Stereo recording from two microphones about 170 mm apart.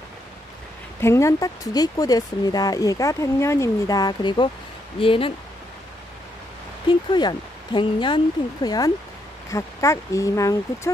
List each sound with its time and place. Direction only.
1.0 s speech: 15° left (ahead or behind); by 5.3 s 30° left (ahead or behind)
6.9 s speech: 25° left (ahead or behind)